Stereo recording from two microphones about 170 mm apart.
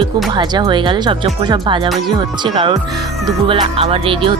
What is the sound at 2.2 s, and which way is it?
Speech, 30° right (ahead or behind).